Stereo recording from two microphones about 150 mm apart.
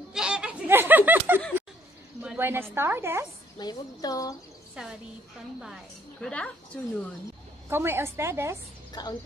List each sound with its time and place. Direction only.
0.1 s a sound: 5° right (ahead or behind)
2.7 s a woman's voice: 15° right (ahead or behind)
3.5 s speech: 25° left (ahead or behind)
4.8 s a woman's voice: 5° right (ahead or behind)
6.2 s a woman's voice: 10° left (ahead or behind)
7.7 s a woman's voice: 15° right (ahead or behind)
8.9 s speech: 25° left (ahead or behind)